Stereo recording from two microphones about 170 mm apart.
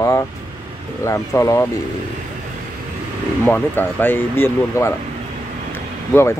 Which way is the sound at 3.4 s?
10° left (ahead or behind).